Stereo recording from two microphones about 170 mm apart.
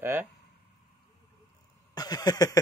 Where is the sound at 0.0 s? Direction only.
10° right (ahead or behind).